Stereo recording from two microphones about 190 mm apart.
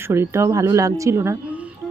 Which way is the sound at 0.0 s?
15° right (ahead or behind).